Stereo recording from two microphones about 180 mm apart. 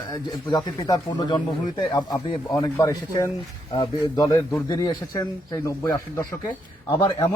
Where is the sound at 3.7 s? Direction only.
25° left (ahead or behind).